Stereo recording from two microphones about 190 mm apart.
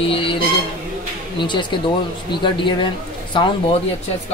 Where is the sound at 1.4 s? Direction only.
25° left (ahead or behind).